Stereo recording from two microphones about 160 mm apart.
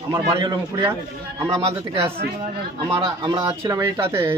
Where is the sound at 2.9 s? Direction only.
30° right (ahead or behind).